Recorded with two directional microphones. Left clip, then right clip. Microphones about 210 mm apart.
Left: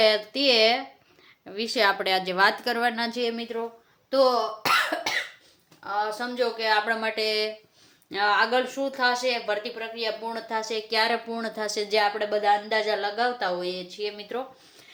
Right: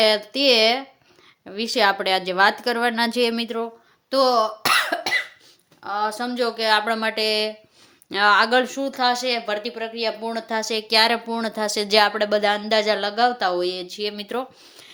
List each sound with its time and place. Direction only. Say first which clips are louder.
0.0 s a woman's voice: right 3 dB; 25° right (ahead or behind); by 3.7 s 45° right (ahead or behind)
4.1 s cough: right 3 dB; 50° right (ahead or behind)
5.8 s speech: right 3 dB; 50° right (ahead or behind); by 7.5 s 35° right (ahead or behind)
8.1 s speech: right 6 dB; 45° right (ahead or behind)